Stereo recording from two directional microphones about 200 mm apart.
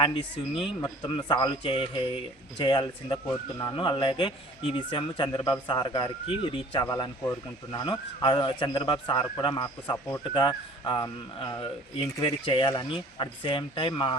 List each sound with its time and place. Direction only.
0.0 s speech: 25° left (ahead or behind)